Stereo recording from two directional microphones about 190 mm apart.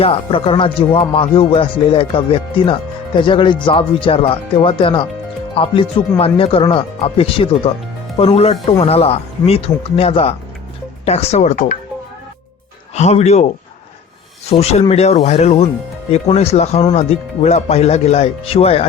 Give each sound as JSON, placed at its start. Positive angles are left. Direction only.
{"t": 0.0, "sound": "speech", "side_deg": 30}
{"t": 12.9, "sound": "speech", "side_deg": 35}
{"t": 14.5, "sound": "speech", "side_deg": 35}